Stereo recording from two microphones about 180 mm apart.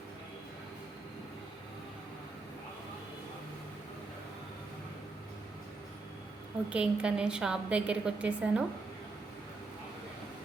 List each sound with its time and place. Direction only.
6.7 s a woman's voice: 5° right (ahead or behind)